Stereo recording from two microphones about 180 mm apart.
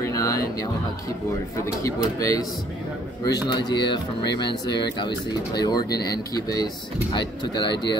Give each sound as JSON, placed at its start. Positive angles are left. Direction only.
{"t": 0.0, "sound": "music", "side_deg": 15}
{"t": 1.8, "sound": "speech", "side_deg": 20}